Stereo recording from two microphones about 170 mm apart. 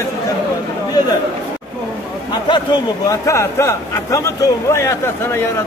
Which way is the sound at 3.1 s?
15° left (ahead or behind).